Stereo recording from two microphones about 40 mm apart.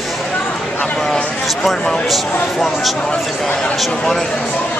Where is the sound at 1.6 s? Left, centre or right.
Centre.